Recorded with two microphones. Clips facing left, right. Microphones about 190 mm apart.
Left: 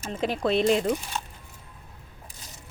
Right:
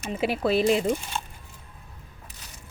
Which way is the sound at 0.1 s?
5° right (ahead or behind).